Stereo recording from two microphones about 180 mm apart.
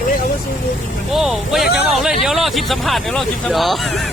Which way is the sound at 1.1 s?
Centre (ahead or behind).